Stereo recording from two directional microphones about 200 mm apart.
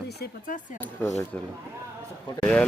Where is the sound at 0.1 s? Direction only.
45° left (ahead or behind).